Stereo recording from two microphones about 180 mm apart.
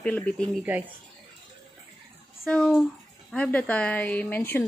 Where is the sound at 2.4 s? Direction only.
5° left (ahead or behind).